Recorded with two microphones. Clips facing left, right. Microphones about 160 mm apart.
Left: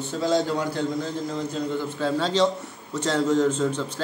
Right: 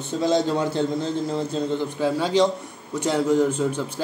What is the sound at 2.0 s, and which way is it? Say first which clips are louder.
A man's voice: right 2 dB; 10° right (ahead or behind).